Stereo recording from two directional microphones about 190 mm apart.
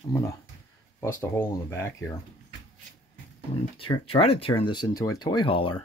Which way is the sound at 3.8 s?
30° left (ahead or behind).